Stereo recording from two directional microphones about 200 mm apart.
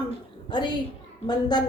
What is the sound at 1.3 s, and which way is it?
Speech, 20° left (ahead or behind).